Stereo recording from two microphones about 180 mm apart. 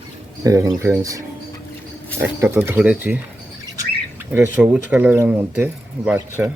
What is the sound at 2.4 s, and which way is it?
Speech, 10° right (ahead or behind).